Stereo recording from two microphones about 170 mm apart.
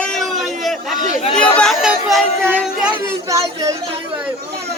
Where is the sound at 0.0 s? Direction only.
5° left (ahead or behind).